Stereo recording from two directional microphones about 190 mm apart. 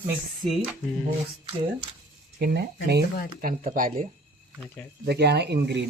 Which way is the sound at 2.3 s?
55° right (ahead or behind).